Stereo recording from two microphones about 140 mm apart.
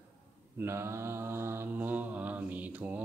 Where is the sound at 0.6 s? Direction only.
20° right (ahead or behind).